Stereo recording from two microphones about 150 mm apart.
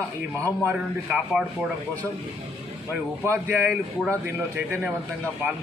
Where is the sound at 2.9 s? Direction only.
15° right (ahead or behind).